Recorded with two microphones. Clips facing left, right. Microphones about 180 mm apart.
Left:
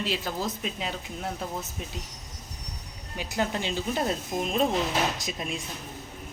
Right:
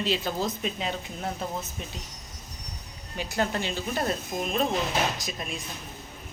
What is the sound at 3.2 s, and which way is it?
Speech, 15° left (ahead or behind).